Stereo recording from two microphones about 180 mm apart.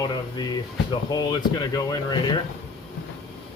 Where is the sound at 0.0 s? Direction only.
20° left (ahead or behind).